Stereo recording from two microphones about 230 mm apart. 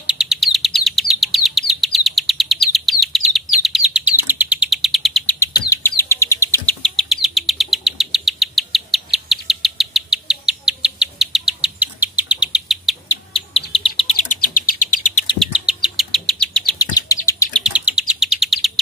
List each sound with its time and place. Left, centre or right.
0.0 s chirp: centre
4.2 s bird: centre
6.8 s bird: centre
13.1 s bird: left
15.3 s bird: centre
16.7 s chirp: centre
17.3 s bird: centre
17.7 s chirp: centre